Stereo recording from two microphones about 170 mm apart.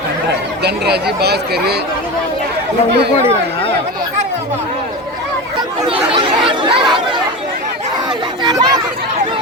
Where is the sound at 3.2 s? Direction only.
35° left (ahead or behind).